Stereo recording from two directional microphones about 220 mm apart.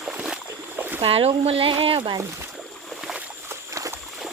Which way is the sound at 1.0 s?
25° right (ahead or behind).